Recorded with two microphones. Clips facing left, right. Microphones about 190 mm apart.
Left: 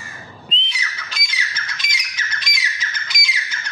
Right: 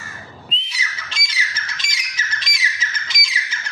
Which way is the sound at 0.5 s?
5° right (ahead or behind).